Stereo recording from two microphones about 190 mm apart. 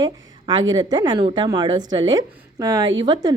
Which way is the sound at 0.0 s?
20° right (ahead or behind).